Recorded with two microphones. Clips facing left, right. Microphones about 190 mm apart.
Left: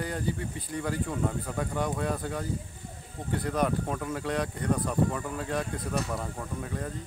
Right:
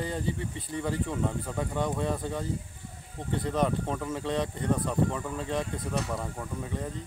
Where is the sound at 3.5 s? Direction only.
Centre (ahead or behind).